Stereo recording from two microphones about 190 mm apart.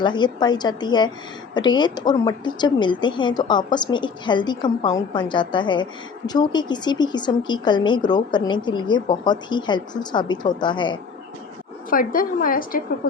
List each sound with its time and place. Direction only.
0.0 s speech: 25° left (ahead or behind)
11.9 s a woman's voice: 50° left (ahead or behind)